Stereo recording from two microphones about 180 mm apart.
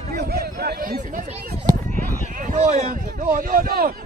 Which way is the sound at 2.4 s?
40° right (ahead or behind).